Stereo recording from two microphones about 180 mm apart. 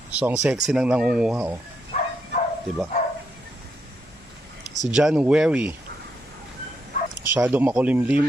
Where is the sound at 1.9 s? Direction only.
40° left (ahead or behind).